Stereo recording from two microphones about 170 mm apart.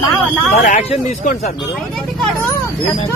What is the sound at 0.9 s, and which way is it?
Speech, 40° left (ahead or behind).